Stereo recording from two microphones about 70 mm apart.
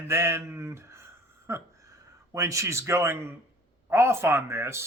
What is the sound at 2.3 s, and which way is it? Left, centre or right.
A man's voice, right.